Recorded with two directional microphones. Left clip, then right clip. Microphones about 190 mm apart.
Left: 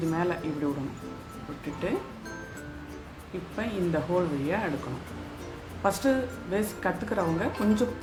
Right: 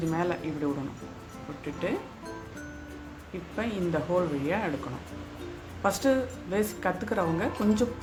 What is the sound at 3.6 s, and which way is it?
A woman's voice, 25° right (ahead or behind).